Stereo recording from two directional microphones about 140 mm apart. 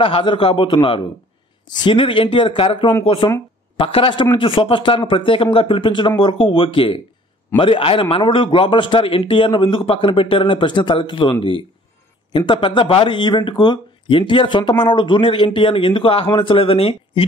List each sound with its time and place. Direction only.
0.0 s speech: 35° left (ahead or behind)